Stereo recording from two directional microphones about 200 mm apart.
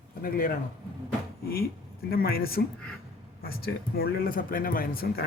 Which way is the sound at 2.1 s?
50° left (ahead or behind).